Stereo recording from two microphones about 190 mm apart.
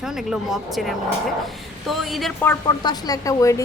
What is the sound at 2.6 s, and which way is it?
Speech, 20° left (ahead or behind).